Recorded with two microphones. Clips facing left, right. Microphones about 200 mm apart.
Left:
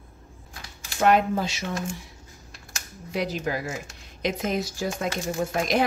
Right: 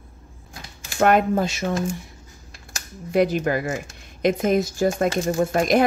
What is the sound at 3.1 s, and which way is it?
Speech, 55° right (ahead or behind).